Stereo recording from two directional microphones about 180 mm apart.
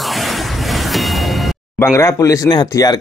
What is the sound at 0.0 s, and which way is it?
Music, centre (ahead or behind).